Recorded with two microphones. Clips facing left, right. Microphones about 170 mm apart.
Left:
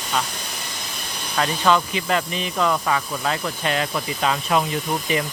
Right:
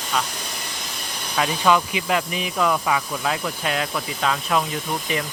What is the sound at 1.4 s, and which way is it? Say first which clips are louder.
Speech: even; 5° right (ahead or behind).